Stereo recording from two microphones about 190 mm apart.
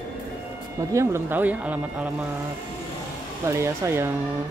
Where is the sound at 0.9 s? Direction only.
15° right (ahead or behind).